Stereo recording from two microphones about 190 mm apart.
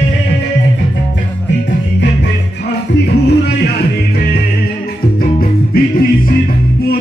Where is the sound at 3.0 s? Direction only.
60° left (ahead or behind).